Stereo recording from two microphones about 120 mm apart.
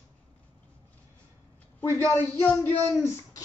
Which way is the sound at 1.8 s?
15° left (ahead or behind).